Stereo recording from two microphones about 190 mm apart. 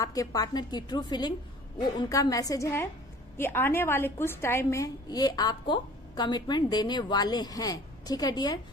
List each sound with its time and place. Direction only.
0.0 s a woman's voice: 20° left (ahead or behind)